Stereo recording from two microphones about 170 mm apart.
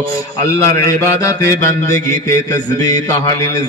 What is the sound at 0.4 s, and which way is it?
Mantra, 20° left (ahead or behind).